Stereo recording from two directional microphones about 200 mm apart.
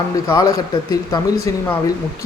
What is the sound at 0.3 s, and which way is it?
Speech, 15° left (ahead or behind).